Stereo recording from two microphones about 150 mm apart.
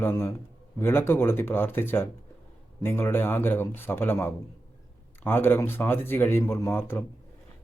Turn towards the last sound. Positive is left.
turn(degrees=15)  # may be behind; listen again after turning